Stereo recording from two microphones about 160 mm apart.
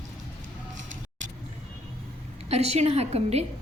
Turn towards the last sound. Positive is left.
turn(degrees=-40)  # may be behind; listen again after turning